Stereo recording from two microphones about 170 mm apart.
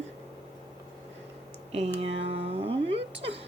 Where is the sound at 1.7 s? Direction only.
35° right (ahead or behind).